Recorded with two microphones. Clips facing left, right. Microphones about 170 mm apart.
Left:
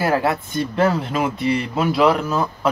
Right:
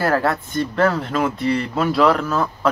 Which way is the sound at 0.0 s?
15° left (ahead or behind).